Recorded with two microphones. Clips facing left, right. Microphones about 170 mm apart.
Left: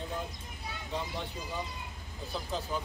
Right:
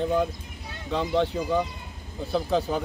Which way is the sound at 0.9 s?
80° right.